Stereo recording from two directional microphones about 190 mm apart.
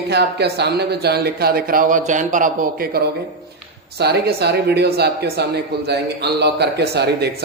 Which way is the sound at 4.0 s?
60° right (ahead or behind).